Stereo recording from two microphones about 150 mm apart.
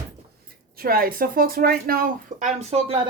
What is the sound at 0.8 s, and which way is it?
Speech, 80° right.